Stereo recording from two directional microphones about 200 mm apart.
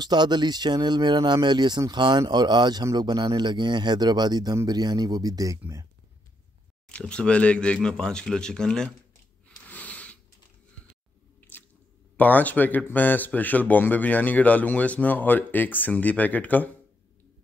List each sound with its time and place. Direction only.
0.0 s speech: 20° right (ahead or behind)
6.9 s a man's voice: 5° left (ahead or behind)
9.7 s a sound: 5° left (ahead or behind)
12.2 s speech: 10° left (ahead or behind)